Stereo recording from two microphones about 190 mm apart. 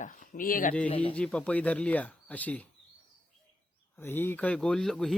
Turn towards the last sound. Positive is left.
turn(degrees=0)  # may be behind; listen again after turning